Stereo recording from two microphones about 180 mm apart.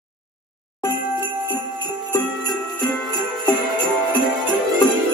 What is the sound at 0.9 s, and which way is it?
Jingle bell, 10° right (ahead or behind).